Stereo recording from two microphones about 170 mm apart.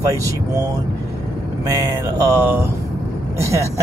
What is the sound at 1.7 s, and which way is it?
Speech, 15° right (ahead or behind).